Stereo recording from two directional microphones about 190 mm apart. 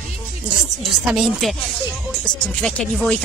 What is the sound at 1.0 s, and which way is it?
Speech, centre (ahead or behind).